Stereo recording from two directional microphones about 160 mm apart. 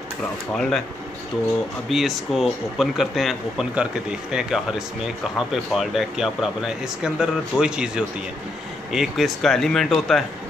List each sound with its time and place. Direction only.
0.5 s speech: 5° left (ahead or behind)
1.9 s speech: centre (ahead or behind)